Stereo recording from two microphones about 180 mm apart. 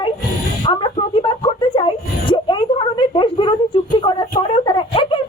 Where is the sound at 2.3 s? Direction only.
25° left (ahead or behind).